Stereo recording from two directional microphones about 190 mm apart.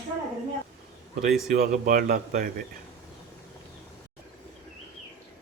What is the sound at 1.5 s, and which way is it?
Speech, 45° right (ahead or behind).